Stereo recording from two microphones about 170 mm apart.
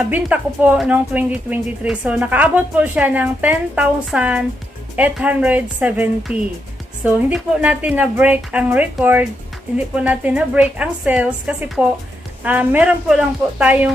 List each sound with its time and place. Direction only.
0.0 s speech: 10° right (ahead or behind)